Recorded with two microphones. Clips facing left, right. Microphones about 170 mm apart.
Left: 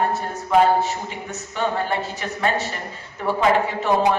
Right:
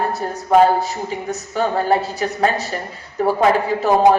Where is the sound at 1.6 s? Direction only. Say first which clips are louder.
Right 5 dB; 40° right (ahead or behind).